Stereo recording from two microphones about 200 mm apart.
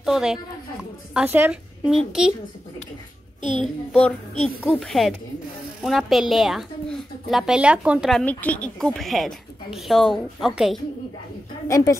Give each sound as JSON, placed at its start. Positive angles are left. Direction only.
{"t": 0.0, "sound": "a woman's voice", "side_deg": 0}
{"t": 3.9, "sound": "speech", "side_deg": 5}
{"t": 11.6, "sound": "a woman's voice", "side_deg": 15}